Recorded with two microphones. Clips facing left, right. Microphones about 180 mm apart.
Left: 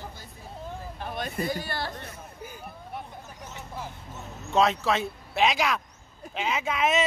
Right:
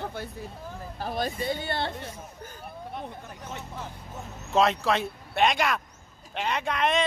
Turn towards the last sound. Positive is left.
turn(degrees=5)  # may be behind; listen again after turning